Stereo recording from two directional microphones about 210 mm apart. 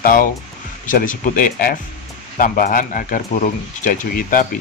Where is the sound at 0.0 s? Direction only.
40° left (ahead or behind).